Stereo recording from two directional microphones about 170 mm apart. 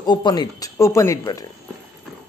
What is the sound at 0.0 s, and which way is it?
Speech, 25° left (ahead or behind).